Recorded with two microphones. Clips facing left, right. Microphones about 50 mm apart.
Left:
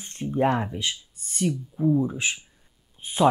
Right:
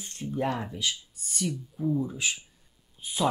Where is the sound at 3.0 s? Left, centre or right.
Left.